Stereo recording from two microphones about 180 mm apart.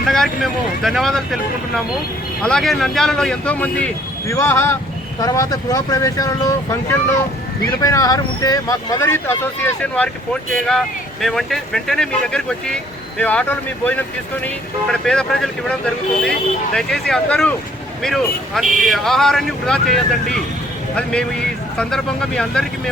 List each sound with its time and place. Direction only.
0.0 s speech: centre (ahead or behind)
18.6 s speech: 45° right (ahead or behind)
18.9 s speech: centre (ahead or behind)